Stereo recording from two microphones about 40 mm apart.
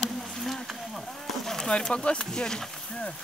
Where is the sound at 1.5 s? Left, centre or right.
Centre.